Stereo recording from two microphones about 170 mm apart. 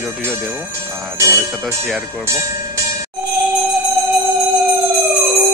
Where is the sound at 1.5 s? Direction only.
Centre (ahead or behind).